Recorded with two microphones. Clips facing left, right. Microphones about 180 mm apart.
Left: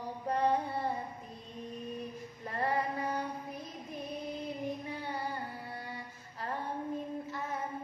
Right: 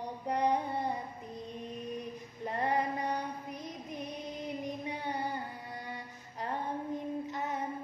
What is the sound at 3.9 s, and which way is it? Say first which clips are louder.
Music: left 3 dB; 20° right (ahead or behind).